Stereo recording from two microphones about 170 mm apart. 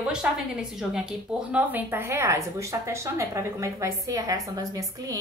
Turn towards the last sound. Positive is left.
turn(degrees=-20)  # may be behind; listen again after turning